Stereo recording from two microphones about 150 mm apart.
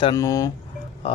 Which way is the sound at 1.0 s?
35° left (ahead or behind).